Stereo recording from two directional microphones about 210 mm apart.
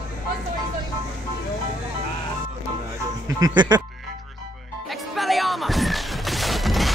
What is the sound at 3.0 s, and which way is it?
Music, 15° right (ahead or behind).